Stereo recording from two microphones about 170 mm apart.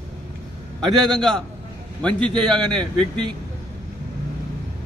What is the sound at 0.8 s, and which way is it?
A man's voice, centre (ahead or behind).